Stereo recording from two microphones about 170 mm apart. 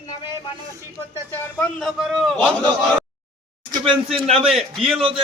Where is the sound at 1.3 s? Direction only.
5° left (ahead or behind).